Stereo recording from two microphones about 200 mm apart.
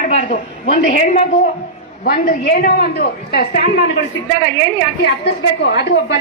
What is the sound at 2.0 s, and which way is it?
A woman's voice, 45° left (ahead or behind).